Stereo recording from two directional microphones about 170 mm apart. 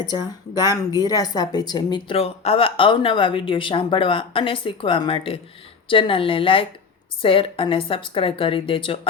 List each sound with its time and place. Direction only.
0.0 s a woman's voice: 25° left (ahead or behind)